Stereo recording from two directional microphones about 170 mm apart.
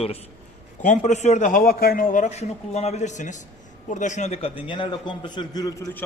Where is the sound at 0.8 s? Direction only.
45° left (ahead or behind); by 5.9 s 20° left (ahead or behind).